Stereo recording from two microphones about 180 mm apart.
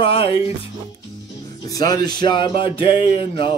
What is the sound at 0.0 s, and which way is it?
Speech, 30° left (ahead or behind).